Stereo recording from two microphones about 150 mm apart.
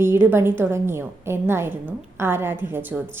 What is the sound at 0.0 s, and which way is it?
A woman's voice, 15° right (ahead or behind).